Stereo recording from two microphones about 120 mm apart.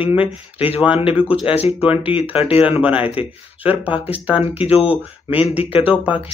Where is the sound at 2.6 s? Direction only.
10° right (ahead or behind).